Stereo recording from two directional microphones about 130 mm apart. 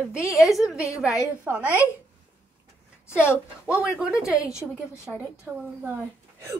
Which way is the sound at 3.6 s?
10° right (ahead or behind).